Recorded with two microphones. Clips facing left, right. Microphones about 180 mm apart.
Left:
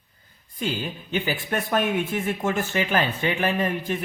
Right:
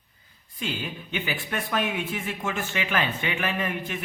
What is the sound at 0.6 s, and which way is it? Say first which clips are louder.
Speech: left 4 dB; 35° left (ahead or behind).